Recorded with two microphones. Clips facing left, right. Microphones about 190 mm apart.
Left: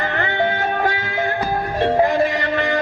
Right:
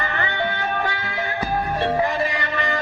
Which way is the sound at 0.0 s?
45° left (ahead or behind).